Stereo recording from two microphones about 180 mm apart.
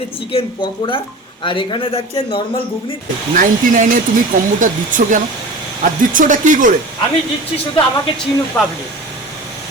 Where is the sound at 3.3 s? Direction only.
45° right (ahead or behind).